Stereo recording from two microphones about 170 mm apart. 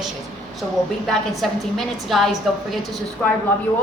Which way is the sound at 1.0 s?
Centre (ahead or behind).